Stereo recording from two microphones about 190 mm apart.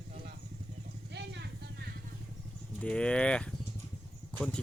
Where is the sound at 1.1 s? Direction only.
65° right (ahead or behind).